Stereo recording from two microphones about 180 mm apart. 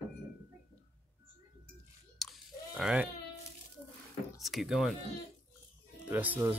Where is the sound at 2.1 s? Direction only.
Centre (ahead or behind).